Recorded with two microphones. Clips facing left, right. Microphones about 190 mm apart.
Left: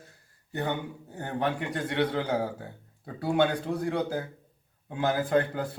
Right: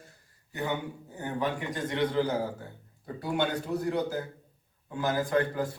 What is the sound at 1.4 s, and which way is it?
Speech, 65° left (ahead or behind).